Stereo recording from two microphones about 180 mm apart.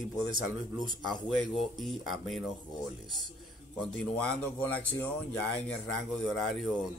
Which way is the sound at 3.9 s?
5° left (ahead or behind).